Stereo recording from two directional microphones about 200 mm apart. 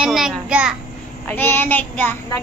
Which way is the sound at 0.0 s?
5° right (ahead or behind).